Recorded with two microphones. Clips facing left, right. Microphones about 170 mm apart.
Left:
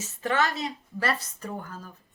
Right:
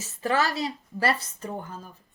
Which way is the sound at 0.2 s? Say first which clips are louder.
Right 1 dB; 35° right (ahead or behind).